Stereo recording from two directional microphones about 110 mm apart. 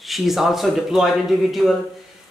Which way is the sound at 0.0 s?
Centre (ahead or behind).